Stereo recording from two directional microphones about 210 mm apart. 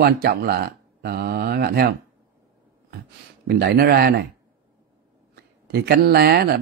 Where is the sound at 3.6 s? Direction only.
50° right (ahead or behind).